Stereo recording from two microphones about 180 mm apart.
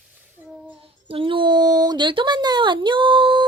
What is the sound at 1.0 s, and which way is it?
Speech, 30° right (ahead or behind).